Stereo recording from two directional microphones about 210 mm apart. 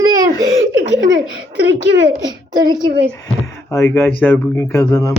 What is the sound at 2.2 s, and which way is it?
Speech, 20° right (ahead or behind).